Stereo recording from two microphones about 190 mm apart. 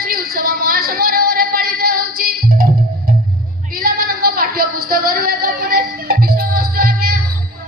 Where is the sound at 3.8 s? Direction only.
50° right (ahead or behind).